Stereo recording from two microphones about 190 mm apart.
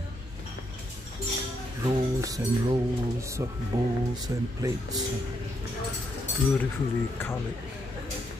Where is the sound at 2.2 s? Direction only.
20° right (ahead or behind).